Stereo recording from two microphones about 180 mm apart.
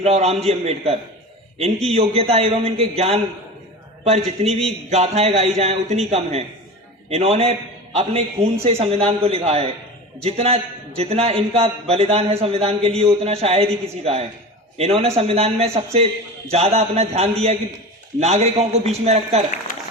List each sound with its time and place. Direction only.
0.0 s a man's voice: 35° right (ahead or behind)